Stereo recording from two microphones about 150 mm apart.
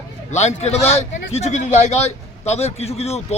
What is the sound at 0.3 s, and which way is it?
A man's voice, 50° left (ahead or behind).